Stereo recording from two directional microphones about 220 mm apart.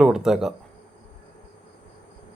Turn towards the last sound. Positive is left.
turn(degrees=0)  # may be behind; listen again after turning